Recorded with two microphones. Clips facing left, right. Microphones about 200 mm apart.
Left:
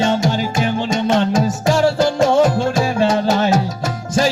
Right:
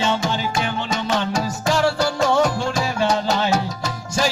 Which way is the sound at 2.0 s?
25° left (ahead or behind).